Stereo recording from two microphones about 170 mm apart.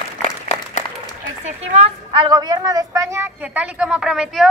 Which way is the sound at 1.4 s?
35° right (ahead or behind).